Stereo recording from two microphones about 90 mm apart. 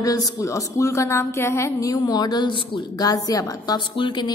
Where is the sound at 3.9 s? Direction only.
60° left (ahead or behind).